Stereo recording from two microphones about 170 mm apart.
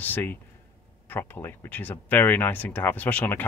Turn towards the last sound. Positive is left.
turn(degrees=10)  # may be behind; listen again after turning